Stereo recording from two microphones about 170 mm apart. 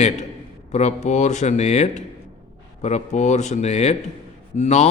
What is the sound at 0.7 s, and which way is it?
A man's voice, 45° left (ahead or behind).